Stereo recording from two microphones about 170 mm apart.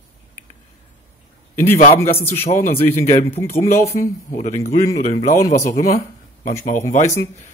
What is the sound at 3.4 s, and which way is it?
Speech, 15° left (ahead or behind).